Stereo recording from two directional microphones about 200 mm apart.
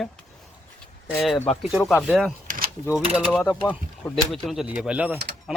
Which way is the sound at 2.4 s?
45° right (ahead or behind).